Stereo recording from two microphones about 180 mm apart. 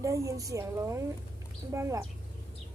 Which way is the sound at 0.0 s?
15° right (ahead or behind).